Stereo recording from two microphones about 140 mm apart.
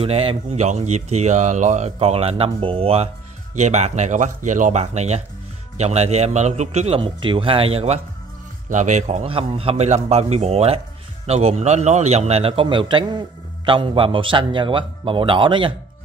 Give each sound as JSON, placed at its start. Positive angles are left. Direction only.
{"t": 0.0, "sound": "speech", "side_deg": -40}
{"t": 3.5, "sound": "speech", "side_deg": -55}
{"t": 8.6, "sound": "speech", "side_deg": -60}
{"t": 9.2, "sound": "a man's voice", "side_deg": -40}